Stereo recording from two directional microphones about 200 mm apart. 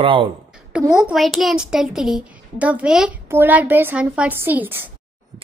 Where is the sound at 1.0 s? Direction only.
Centre (ahead or behind).